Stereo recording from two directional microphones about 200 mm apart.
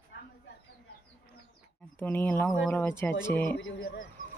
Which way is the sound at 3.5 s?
70° left (ahead or behind).